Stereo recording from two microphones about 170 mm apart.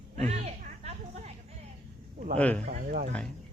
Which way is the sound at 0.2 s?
40° right (ahead or behind).